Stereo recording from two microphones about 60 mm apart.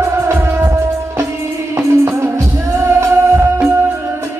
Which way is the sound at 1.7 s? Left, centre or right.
Right.